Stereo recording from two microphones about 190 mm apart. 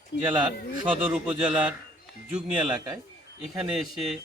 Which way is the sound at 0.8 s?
5° right (ahead or behind).